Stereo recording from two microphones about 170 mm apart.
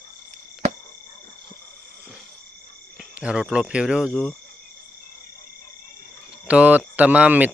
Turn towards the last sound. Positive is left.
turn(degrees=-10)  # may be behind; listen again after turning